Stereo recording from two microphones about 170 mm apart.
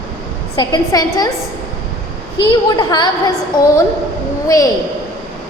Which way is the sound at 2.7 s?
25° left (ahead or behind).